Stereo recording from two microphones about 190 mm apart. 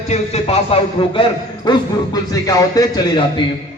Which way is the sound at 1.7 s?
20° left (ahead or behind).